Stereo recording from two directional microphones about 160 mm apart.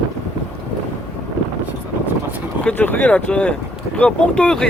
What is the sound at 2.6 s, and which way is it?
Speech, 10° left (ahead or behind).